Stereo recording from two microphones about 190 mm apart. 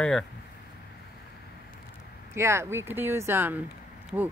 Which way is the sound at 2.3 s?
15° right (ahead or behind).